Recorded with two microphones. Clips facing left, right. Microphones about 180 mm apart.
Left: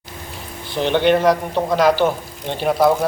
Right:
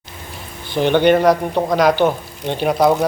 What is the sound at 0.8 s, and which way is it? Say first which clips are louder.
A man's voice: right 3 dB; 5° right (ahead or behind).